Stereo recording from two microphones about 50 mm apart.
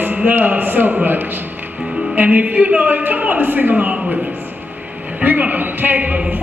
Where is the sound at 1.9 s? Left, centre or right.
Right.